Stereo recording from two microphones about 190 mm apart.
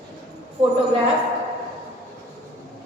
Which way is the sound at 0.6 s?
30° right (ahead or behind).